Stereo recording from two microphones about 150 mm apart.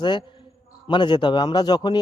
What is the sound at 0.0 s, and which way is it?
A man's voice, 30° left (ahead or behind).